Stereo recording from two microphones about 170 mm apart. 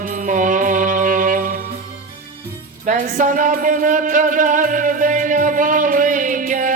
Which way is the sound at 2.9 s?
50° right (ahead or behind).